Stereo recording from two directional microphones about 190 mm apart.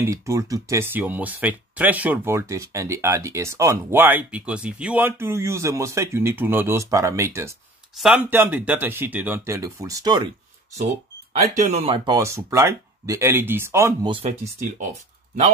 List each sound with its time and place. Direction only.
0.0 s speech: 15° right (ahead or behind)
11.6 s speech: 35° right (ahead or behind)
12.1 s speech: 15° right (ahead or behind)
14.1 s speech: 30° right (ahead or behind)